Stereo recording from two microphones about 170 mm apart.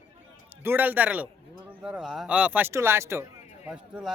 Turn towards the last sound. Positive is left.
turn(degrees=-15)  # may be behind; listen again after turning